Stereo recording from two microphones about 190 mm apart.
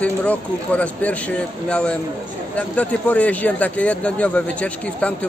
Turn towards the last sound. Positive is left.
turn(degrees=5)  # may be behind; listen again after turning